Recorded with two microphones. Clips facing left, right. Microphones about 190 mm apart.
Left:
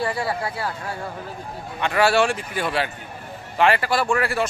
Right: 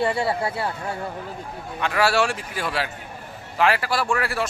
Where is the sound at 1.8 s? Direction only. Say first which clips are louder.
Left 2 dB; centre (ahead or behind).